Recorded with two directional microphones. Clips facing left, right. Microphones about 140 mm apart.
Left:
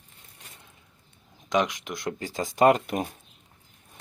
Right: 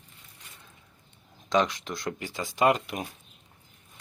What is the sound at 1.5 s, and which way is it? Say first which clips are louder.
Speech: even; 20° left (ahead or behind).